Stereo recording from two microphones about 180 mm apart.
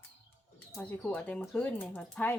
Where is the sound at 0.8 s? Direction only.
10° left (ahead or behind).